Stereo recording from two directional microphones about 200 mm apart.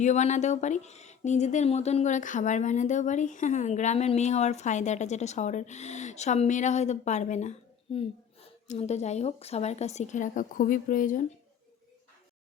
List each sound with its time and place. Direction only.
0.0 s speech: 35° left (ahead or behind)